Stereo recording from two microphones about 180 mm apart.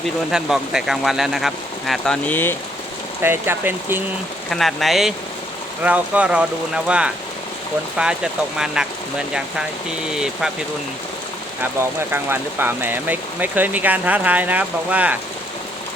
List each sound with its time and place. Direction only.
0.3 s speech: centre (ahead or behind)
3.2 s speech: 10° right (ahead or behind)
4.4 s speech: centre (ahead or behind)
10.1 s speech: 5° right (ahead or behind)
12.1 s speech: 10° right (ahead or behind)